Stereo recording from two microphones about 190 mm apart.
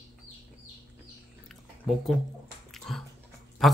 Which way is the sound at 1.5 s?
Centre (ahead or behind).